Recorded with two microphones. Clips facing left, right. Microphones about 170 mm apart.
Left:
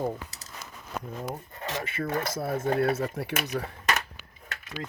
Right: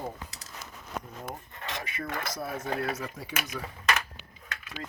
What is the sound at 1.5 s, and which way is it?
Speech, 40° left (ahead or behind).